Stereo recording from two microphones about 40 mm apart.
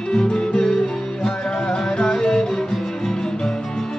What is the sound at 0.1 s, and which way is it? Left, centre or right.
Music, left.